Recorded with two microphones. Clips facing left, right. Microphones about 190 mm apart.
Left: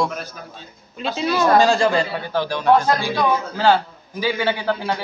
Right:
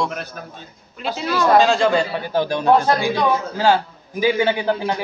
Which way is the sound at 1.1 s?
15° left (ahead or behind).